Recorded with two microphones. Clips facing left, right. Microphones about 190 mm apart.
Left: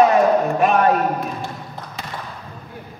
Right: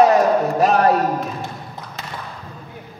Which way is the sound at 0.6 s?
40° right (ahead or behind).